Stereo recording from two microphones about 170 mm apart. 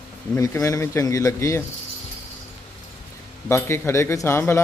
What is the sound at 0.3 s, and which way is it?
A man's voice, 20° left (ahead or behind).